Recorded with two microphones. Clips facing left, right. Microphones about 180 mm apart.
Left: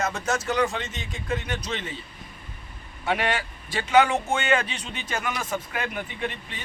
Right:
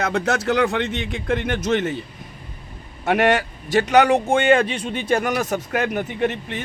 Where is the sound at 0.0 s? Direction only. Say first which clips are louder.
Right 6 dB; 65° right (ahead or behind); by 2.0 s 50° right (ahead or behind).